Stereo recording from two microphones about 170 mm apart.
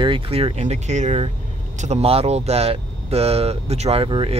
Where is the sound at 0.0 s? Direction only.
30° right (ahead or behind).